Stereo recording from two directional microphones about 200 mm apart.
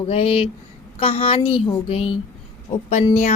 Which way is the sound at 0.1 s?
30° left (ahead or behind).